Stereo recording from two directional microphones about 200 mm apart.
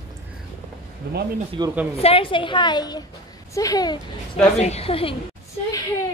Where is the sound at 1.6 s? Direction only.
20° right (ahead or behind).